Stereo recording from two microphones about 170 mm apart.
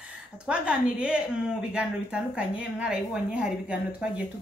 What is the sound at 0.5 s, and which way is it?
A woman's voice, 5° right (ahead or behind).